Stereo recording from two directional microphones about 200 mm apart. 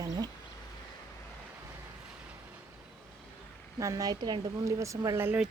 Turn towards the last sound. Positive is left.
turn(degrees=-10)  # may be behind; listen again after turning